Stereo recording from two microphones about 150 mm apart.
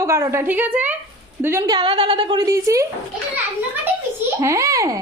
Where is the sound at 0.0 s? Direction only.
20° right (ahead or behind).